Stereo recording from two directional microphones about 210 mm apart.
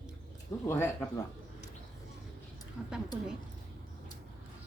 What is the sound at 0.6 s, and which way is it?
Speech, 10° left (ahead or behind).